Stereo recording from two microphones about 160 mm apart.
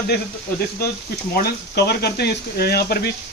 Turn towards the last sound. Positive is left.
turn(degrees=75)  # may be behind; listen again after turning